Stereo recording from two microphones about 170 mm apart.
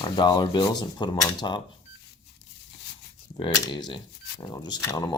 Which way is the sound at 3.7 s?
25° left (ahead or behind).